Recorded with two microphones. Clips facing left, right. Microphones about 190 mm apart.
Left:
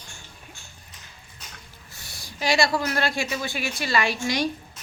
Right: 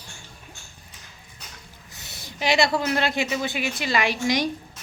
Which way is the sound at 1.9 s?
20° right (ahead or behind).